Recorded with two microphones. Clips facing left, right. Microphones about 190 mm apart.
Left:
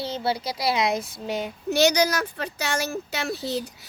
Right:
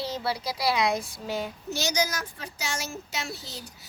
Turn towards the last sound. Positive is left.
turn(degrees=65)  # may be behind; listen again after turning